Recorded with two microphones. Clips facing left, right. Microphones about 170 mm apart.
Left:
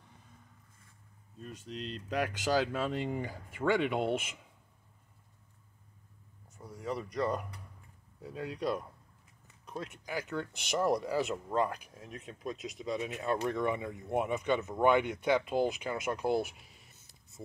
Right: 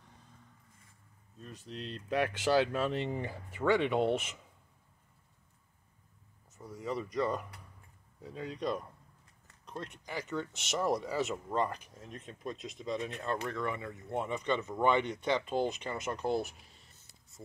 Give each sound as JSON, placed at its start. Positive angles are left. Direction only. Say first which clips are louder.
{"t": 1.4, "sound": "speech", "louder": "left 2 dB", "side_deg": 0}
{"t": 6.6, "sound": "speech", "louder": "right 1 dB", "side_deg": 0}